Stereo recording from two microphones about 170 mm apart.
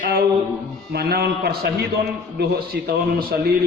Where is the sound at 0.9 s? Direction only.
65° right (ahead or behind).